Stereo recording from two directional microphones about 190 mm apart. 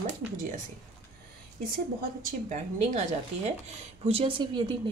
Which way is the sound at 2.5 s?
40° right (ahead or behind).